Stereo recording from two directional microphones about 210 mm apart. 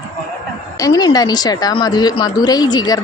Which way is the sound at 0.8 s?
20° left (ahead or behind).